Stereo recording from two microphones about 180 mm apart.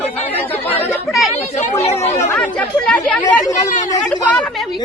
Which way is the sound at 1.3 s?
40° left (ahead or behind).